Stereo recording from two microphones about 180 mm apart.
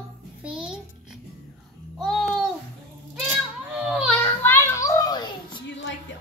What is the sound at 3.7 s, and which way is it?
Children playing, 5° right (ahead or behind).